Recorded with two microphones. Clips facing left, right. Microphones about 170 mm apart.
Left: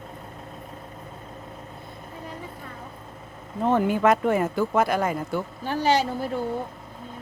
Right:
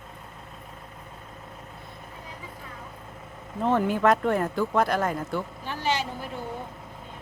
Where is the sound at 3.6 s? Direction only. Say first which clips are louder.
Left 2 dB; centre (ahead or behind).